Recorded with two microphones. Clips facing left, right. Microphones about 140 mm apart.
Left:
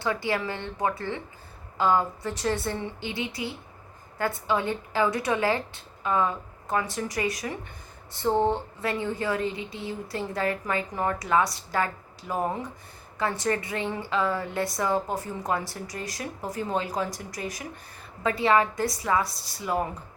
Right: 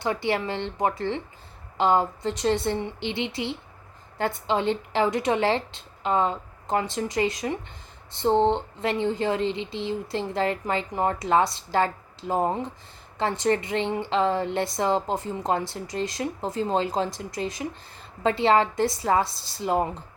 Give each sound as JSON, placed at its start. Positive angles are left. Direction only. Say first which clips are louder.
{"t": 0.0, "sound": "a woman's voice", "louder": "right 2 dB", "side_deg": -25}